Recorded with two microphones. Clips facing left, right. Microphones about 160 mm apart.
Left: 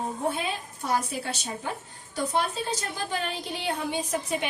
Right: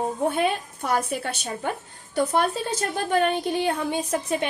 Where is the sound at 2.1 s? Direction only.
60° right (ahead or behind).